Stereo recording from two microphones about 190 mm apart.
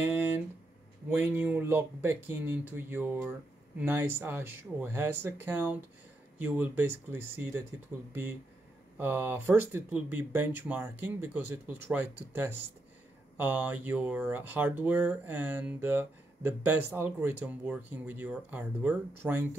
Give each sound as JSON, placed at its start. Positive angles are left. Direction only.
{"t": 1.1, "sound": "speech", "side_deg": -10}